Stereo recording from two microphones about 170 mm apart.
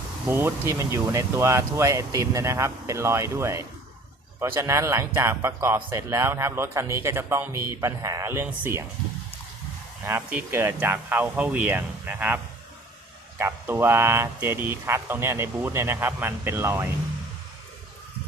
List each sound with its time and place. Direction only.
0.3 s a man's voice: 15° right (ahead or behind)
10.1 s a man's voice: 10° right (ahead or behind)
13.4 s a man's voice: 15° right (ahead or behind)